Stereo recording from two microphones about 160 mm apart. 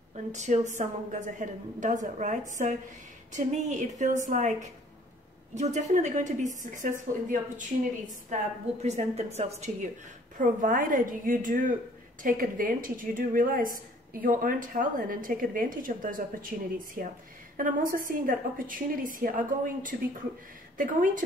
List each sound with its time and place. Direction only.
0.1 s a woman's voice: 45° right (ahead or behind)
10.3 s a woman's voice: 55° right (ahead or behind)